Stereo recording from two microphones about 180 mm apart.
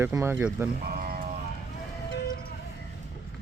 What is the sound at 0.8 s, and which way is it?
Sheep, 55° right (ahead or behind).